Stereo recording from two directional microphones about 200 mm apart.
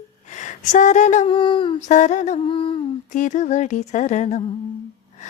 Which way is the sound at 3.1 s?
40° left (ahead or behind).